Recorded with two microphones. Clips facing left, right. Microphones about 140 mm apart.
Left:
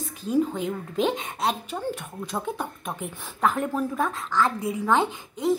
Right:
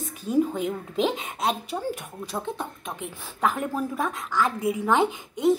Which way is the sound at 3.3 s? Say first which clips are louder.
Left 1 dB; 10° right (ahead or behind).